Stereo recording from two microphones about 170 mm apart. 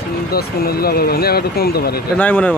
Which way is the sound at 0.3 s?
65° left (ahead or behind).